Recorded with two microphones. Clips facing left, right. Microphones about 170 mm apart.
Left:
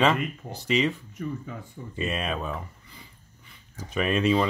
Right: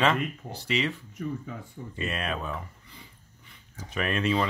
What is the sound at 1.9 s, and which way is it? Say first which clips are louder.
Speech: left 3 dB; 20° left (ahead or behind).